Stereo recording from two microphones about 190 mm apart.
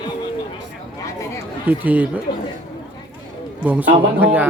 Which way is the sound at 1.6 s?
10° right (ahead or behind).